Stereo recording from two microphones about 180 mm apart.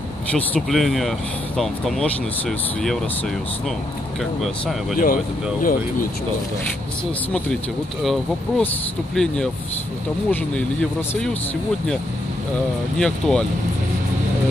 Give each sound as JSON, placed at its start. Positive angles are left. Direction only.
{"t": 0.3, "sound": "speech", "side_deg": 5}
{"t": 4.2, "sound": "speech", "side_deg": 0}
{"t": 4.9, "sound": "speech", "side_deg": 50}
{"t": 8.0, "sound": "speech", "side_deg": 0}
{"t": 12.9, "sound": "speech", "side_deg": 5}